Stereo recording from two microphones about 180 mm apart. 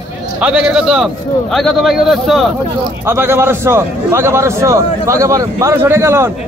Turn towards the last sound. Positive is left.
turn(degrees=-15)  # may be behind; listen again after turning